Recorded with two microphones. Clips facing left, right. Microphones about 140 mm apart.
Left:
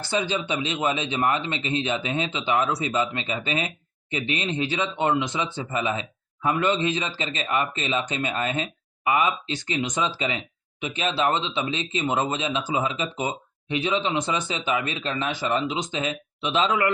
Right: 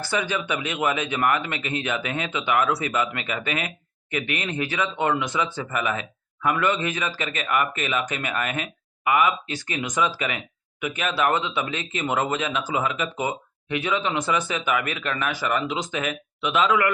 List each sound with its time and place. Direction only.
0.0 s speech: 25° left (ahead or behind)